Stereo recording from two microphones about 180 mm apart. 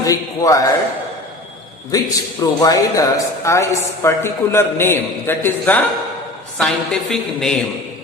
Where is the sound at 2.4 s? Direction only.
20° left (ahead or behind); by 7.5 s 5° left (ahead or behind).